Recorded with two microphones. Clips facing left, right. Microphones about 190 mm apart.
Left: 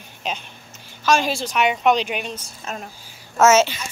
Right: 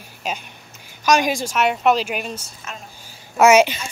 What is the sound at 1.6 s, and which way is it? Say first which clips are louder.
Speech: even; centre (ahead or behind).